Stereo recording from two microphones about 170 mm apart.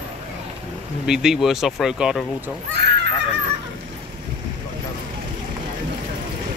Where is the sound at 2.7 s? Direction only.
75° right (ahead or behind).